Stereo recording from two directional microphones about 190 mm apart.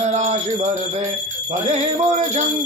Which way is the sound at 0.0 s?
35° right (ahead or behind).